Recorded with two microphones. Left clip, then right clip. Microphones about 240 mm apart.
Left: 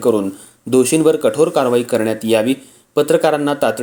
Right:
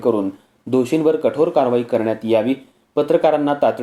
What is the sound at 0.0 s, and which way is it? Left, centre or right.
Speech, left.